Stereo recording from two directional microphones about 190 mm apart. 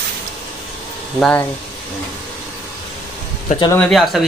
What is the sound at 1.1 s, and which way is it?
Speech, 5° left (ahead or behind).